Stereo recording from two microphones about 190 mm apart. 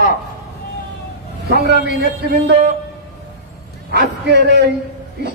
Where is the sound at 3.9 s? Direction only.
60° right (ahead or behind).